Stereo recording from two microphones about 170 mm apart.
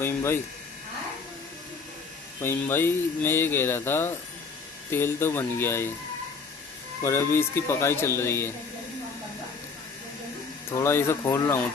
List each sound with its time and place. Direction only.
0.0 s speech: 15° left (ahead or behind)
2.4 s speech: 15° left (ahead or behind)
7.0 s speech: 15° left (ahead or behind)
10.7 s speech: 15° left (ahead or behind)